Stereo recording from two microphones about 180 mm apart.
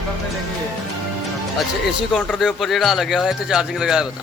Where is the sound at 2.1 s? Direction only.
5° left (ahead or behind).